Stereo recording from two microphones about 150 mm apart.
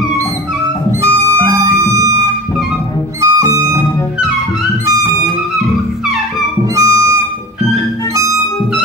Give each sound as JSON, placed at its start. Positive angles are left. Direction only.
{"t": 1.0, "sound": "music", "side_deg": -20}
{"t": 4.8, "sound": "music", "side_deg": -20}
{"t": 6.8, "sound": "music", "side_deg": -20}